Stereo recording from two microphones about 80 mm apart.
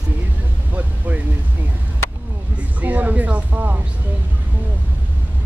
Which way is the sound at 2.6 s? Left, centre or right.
Centre.